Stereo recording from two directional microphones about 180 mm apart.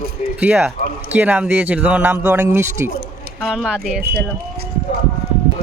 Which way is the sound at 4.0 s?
60° right (ahead or behind).